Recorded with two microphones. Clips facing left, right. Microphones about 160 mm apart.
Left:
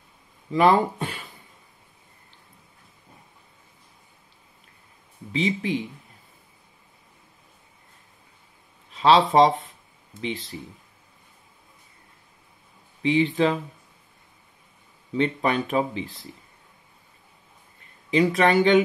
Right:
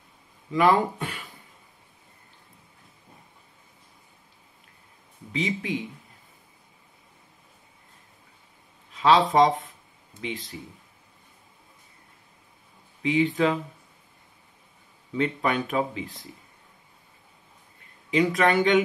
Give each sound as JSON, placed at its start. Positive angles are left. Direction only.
{"t": 0.5, "sound": "speech", "side_deg": 30}
{"t": 5.3, "sound": "speech", "side_deg": 30}
{"t": 8.9, "sound": "speech", "side_deg": 30}
{"t": 13.0, "sound": "speech", "side_deg": 30}
{"t": 15.1, "sound": "speech", "side_deg": 30}
{"t": 18.1, "sound": "speech", "side_deg": 30}